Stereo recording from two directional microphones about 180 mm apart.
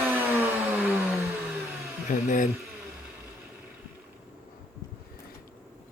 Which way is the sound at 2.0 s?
45° left (ahead or behind).